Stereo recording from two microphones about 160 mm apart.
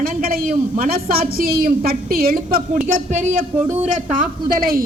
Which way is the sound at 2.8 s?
50° right (ahead or behind).